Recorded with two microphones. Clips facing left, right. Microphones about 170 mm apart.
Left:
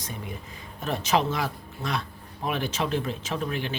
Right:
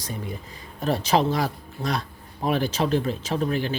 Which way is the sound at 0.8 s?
35° right (ahead or behind).